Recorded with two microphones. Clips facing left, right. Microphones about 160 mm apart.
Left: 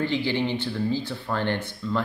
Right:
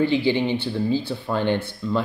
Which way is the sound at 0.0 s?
15° right (ahead or behind).